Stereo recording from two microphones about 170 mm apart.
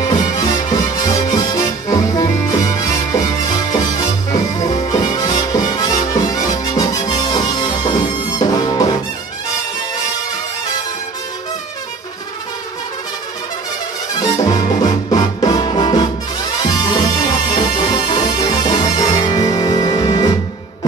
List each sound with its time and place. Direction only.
0.0 s music: 20° left (ahead or behind)
14.2 s music: 20° left (ahead or behind)
14.5 s music: 40° left (ahead or behind)
15.4 s music: 25° left (ahead or behind)